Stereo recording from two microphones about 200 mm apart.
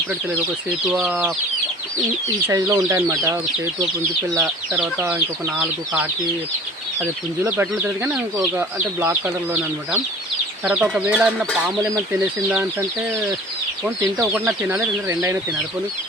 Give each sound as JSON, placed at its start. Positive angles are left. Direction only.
{"t": 0.9, "sound": "speech", "side_deg": -5}
{"t": 2.5, "sound": "speech", "side_deg": -15}
{"t": 4.4, "sound": "speech", "side_deg": -5}
{"t": 14.2, "sound": "speech", "side_deg": -10}